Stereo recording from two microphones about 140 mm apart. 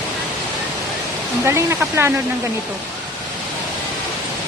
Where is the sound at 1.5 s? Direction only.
20° right (ahead or behind).